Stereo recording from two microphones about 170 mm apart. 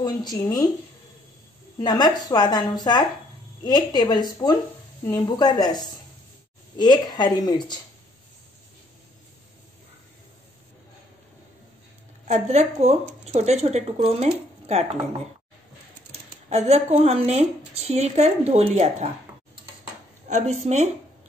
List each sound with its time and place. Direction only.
0.0 s a woman's voice: 25° left (ahead or behind)
1.8 s a woman's voice: 25° left (ahead or behind)
12.3 s speech: 40° right (ahead or behind)
16.1 s speech: 40° right (ahead or behind)
20.2 s speech: 40° right (ahead or behind)